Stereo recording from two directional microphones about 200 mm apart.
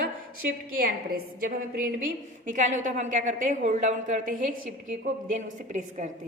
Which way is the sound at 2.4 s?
40° right (ahead or behind).